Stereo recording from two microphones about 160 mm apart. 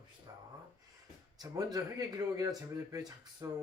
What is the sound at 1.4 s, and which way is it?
Speech, 25° right (ahead or behind).